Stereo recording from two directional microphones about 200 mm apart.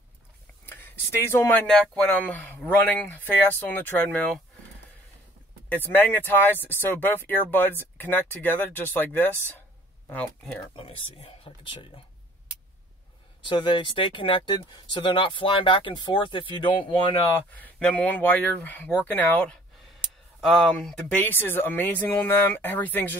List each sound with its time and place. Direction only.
0.7 s speech: 10° left (ahead or behind)
5.7 s speech: 10° left (ahead or behind)
10.8 s speech: 30° left (ahead or behind)
13.5 s speech: 25° left (ahead or behind)
17.4 s speech: 10° left (ahead or behind)